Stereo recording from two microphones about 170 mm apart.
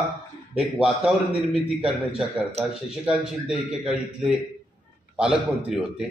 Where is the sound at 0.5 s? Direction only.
5° right (ahead or behind).